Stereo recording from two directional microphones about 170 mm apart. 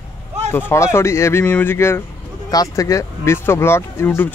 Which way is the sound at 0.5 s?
15° left (ahead or behind).